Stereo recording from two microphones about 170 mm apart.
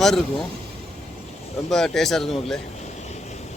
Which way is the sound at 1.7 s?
Centre (ahead or behind).